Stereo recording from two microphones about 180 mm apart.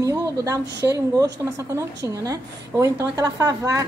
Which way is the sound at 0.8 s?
20° right (ahead or behind).